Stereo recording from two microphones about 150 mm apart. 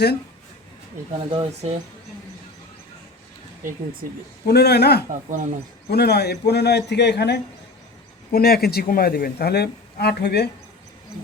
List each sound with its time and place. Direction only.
1.3 s speech: 40° right (ahead or behind)
3.6 s speech: 65° right (ahead or behind)
4.4 s speech: 90° left
5.3 s speech: 55° right (ahead or behind)
5.9 s speech: 90° left